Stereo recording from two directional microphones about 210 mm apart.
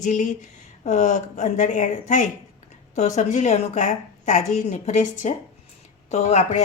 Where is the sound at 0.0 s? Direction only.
35° left (ahead or behind).